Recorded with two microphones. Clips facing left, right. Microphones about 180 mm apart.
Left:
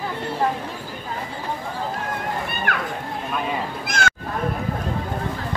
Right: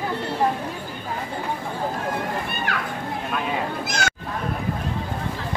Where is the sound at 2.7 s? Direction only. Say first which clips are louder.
Left 1 dB; 55° left (ahead or behind).